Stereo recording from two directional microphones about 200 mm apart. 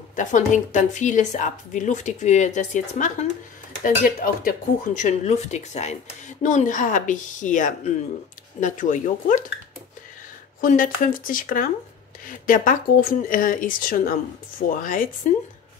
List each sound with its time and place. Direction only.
0.1 s speech: 40° left (ahead or behind)
10.6 s speech: 40° left (ahead or behind)